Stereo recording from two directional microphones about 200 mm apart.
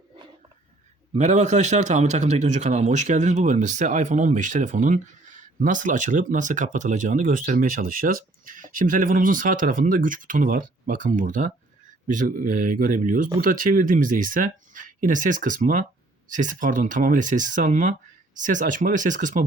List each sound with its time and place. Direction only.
1.1 s a man's voice: 35° right (ahead or behind)